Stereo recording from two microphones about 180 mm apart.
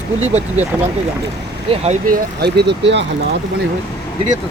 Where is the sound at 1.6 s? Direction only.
35° right (ahead or behind).